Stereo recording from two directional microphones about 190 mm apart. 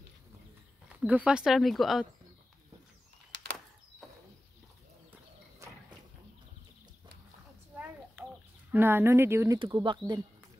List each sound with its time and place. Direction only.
1.0 s speech: 5° right (ahead or behind)
4.0 s a sound: centre (ahead or behind)
8.2 s chicken: 10° right (ahead or behind)
8.7 s speech: 10° right (ahead or behind)